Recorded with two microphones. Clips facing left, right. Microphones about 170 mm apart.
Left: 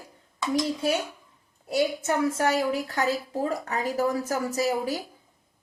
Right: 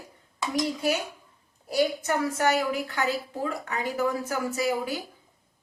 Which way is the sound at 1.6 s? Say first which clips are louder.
Even; 25° left (ahead or behind).